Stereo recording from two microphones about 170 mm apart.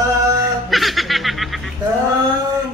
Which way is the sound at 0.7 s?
Centre (ahead or behind).